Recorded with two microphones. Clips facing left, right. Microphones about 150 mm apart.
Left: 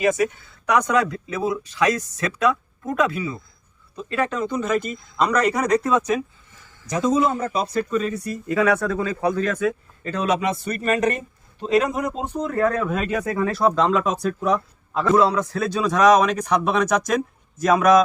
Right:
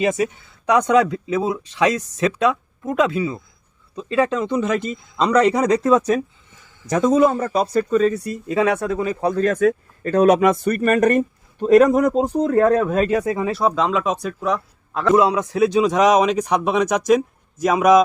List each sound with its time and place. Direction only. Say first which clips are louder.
0.0 s speech: even; 25° right (ahead or behind)
6.9 s speech: right 5 dB; 50° right (ahead or behind)
7.3 s speech: right 4 dB; 40° right (ahead or behind); by 9.3 s 20° right (ahead or behind)
9.3 s speech: right 5 dB; 40° right (ahead or behind); by 13.5 s 25° right (ahead or behind)
13.5 s a man's voice: left 2 dB; centre (ahead or behind)
15.0 s a man's voice: right 2 dB; 10° right (ahead or behind)